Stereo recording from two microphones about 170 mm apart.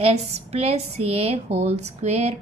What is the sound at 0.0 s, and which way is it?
A woman's voice, 35° right (ahead or behind).